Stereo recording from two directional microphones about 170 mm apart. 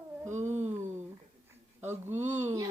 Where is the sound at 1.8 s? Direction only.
15° right (ahead or behind).